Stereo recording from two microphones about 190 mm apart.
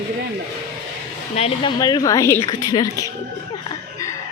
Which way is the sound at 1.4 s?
30° left (ahead or behind).